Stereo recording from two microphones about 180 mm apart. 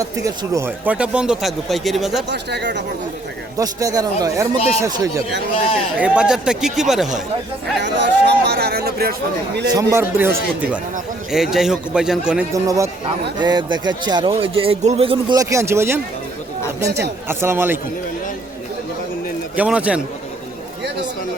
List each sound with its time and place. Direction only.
0.0 s speech: 20° right (ahead or behind); by 2.2 s centre (ahead or behind)
2.3 s speech: 70° right (ahead or behind)
3.6 s speech: 20° right (ahead or behind)
4.5 s speech: 35° left (ahead or behind)
4.8 s speech: 20° right (ahead or behind)
5.5 s speech: 30° left (ahead or behind)
6.0 s speech: 5° right (ahead or behind)
7.8 s speech: 70° right (ahead or behind)
9.9 s speech: 15° right (ahead or behind)
12.6 s speech: 20° right (ahead or behind)
15.4 s speech: 15° right (ahead or behind)
17.2 s speech: 15° right (ahead or behind)
19.5 s speech: 5° right (ahead or behind)